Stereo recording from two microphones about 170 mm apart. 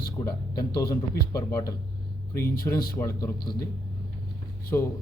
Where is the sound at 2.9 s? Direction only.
20° left (ahead or behind).